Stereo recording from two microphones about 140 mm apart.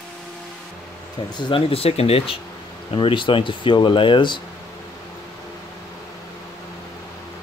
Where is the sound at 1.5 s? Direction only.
45° left (ahead or behind).